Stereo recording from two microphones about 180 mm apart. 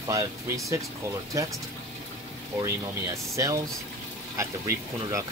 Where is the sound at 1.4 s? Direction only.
20° right (ahead or behind).